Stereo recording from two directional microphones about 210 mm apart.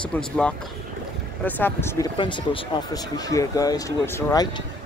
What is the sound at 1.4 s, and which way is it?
Speech, 10° left (ahead or behind).